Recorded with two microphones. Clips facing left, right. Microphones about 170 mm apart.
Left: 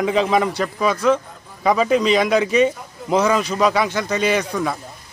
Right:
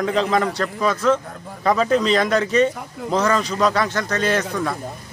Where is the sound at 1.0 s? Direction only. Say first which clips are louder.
Left 1 dB; 15° left (ahead or behind).